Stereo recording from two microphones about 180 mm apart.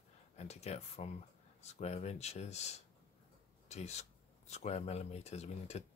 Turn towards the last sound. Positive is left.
turn(degrees=35)  # may be behind; listen again after turning